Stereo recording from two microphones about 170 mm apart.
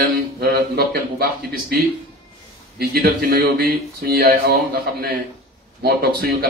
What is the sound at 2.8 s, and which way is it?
A man's voice, 60° right (ahead or behind).